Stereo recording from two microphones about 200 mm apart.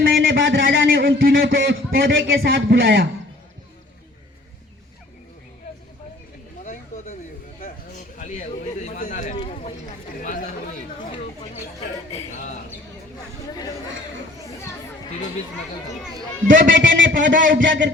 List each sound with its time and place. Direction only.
0.0 s a sound: 75° right (ahead or behind)
2.0 s speech: 70° right (ahead or behind)
2.5 s a man's voice: 55° right (ahead or behind)
8.1 s bird: 35° left (ahead or behind)
9.3 s a sound: 25° left (ahead or behind)
10.2 s chatter: 40° left (ahead or behind)
16.5 s speech: 65° right (ahead or behind)
17.2 s a man's voice: 40° right (ahead or behind)
17.5 s speech: 65° right (ahead or behind)